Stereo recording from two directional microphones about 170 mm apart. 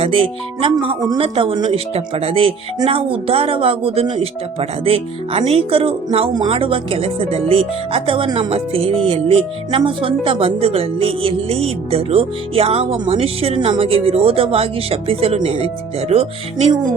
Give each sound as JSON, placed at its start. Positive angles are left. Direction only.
{"t": 0.0, "sound": "speech", "side_deg": -35}